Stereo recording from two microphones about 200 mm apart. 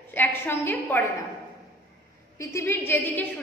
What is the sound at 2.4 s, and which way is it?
Speech, 15° left (ahead or behind).